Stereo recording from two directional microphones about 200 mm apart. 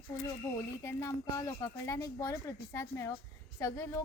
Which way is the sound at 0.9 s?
15° left (ahead or behind).